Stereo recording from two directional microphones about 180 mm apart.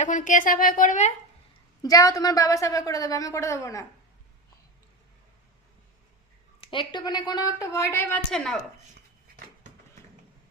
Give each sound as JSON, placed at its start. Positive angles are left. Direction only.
{"t": 0.0, "sound": "speech", "side_deg": 45}
{"t": 1.8, "sound": "a woman's voice", "side_deg": 20}
{"t": 6.6, "sound": "a woman's voice", "side_deg": 30}